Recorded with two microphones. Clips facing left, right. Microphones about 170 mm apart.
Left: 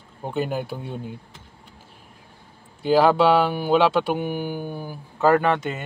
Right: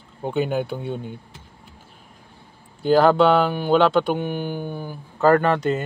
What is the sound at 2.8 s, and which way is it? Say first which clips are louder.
Speech: right 2 dB; 5° left (ahead or behind).